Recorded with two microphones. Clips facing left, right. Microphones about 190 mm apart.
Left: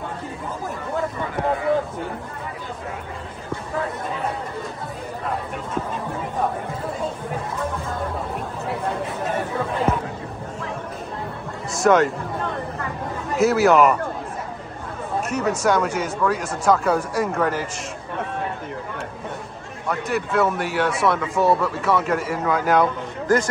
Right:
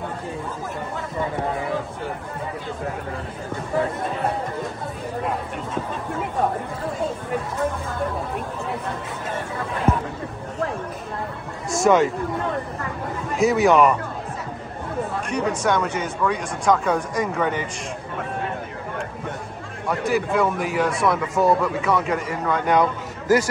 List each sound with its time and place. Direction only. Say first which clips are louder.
11.7 s speech: even; centre (ahead or behind)
13.4 s a man's voice: left 1 dB; centre (ahead or behind)
15.2 s a man's voice: left 2 dB; 5° left (ahead or behind)
19.9 s a man's voice: right 2 dB; centre (ahead or behind)